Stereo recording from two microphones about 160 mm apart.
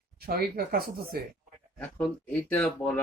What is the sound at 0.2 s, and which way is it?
Speech, 70° right (ahead or behind).